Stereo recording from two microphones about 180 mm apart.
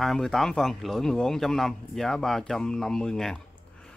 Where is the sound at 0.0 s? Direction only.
Centre (ahead or behind).